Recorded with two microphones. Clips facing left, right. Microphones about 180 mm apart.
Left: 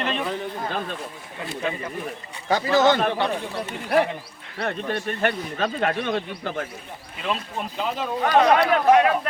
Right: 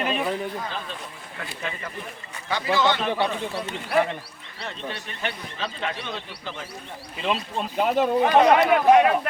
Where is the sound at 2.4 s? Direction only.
45° left (ahead or behind).